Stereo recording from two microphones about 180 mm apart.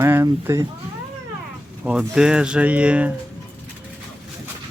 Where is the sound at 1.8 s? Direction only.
5° right (ahead or behind).